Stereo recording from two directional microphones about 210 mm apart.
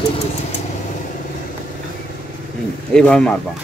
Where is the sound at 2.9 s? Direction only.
5° left (ahead or behind).